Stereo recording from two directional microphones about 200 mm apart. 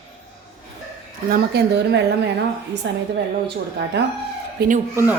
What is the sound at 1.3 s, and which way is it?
Speech, 55° right (ahead or behind).